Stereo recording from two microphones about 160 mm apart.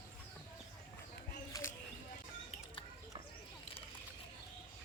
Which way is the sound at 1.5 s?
20° left (ahead or behind).